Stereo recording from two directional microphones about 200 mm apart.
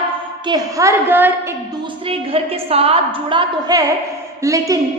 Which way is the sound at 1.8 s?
30° right (ahead or behind).